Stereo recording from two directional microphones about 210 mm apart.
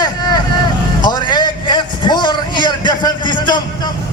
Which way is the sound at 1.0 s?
20° left (ahead or behind).